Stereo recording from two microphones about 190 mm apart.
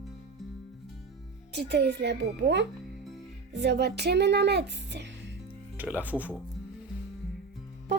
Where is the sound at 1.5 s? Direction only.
60° right (ahead or behind).